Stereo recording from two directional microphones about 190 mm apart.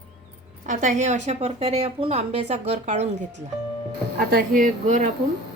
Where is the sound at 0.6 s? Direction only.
40° right (ahead or behind).